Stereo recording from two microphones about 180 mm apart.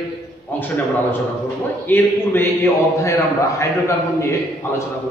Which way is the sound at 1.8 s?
10° left (ahead or behind).